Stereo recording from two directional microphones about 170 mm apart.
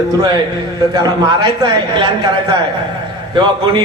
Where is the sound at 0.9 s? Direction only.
25° right (ahead or behind).